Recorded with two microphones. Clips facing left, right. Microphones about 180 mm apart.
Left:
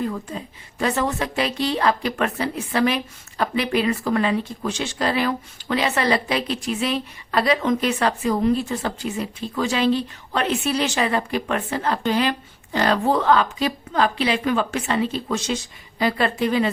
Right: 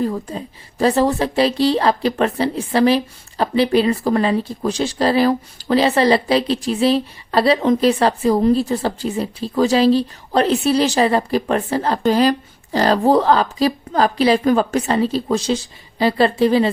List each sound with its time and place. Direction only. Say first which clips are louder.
0.0 s a woman's voice: right 5 dB; 35° right (ahead or behind)